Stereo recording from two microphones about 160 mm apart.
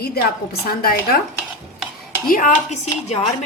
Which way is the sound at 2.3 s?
55° left (ahead or behind).